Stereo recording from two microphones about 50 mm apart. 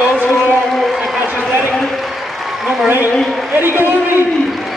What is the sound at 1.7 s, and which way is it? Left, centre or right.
Applause, centre.